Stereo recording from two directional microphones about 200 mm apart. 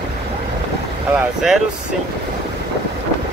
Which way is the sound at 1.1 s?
Centre (ahead or behind).